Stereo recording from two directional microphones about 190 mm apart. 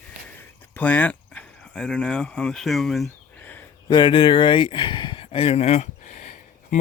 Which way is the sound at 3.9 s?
25° left (ahead or behind).